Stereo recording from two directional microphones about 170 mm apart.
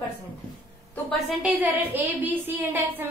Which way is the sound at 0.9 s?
5° left (ahead or behind).